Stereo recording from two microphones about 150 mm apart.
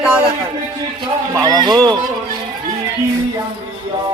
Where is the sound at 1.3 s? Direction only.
25° right (ahead or behind).